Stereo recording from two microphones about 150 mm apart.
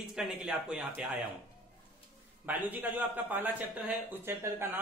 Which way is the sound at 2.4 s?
10° right (ahead or behind).